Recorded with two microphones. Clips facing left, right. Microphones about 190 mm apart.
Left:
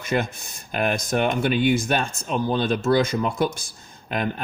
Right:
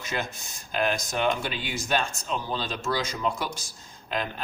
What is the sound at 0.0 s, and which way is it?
Speech, 55° left (ahead or behind).